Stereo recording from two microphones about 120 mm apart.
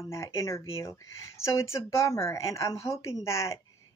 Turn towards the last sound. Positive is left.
turn(degrees=25)  # may be behind; listen again after turning